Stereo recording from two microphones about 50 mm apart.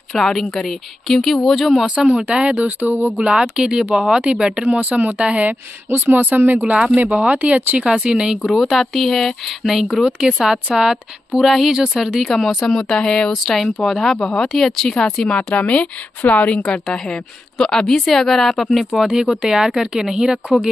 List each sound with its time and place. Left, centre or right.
0.1 s a woman's voice: centre
2.0 s speech: centre
2.6 s a woman's voice: right
3.2 s a woman's voice: centre
5.0 s a woman's voice: right
6.6 s a woman's voice: centre
7.0 s speech: right
7.8 s a woman's voice: centre
8.4 s a woman's voice: centre
12.6 s a woman's voice: centre
13.3 s speech: centre
14.1 s a woman's voice: centre
15.7 s speech: left
16.8 s a woman's voice: centre